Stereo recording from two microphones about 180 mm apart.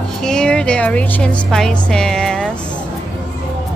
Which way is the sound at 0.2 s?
5° left (ahead or behind).